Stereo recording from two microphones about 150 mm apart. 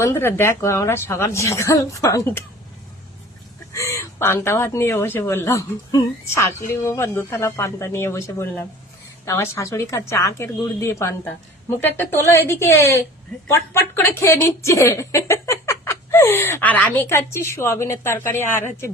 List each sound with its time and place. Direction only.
0.0 s a woman's voice: 15° left (ahead or behind)
3.7 s a woman's voice: 20° left (ahead or behind)